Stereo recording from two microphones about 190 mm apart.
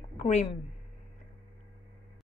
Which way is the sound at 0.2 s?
35° left (ahead or behind).